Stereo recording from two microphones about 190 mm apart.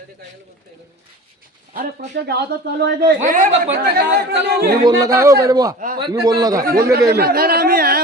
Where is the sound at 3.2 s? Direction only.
40° right (ahead or behind); by 4.7 s 55° right (ahead or behind).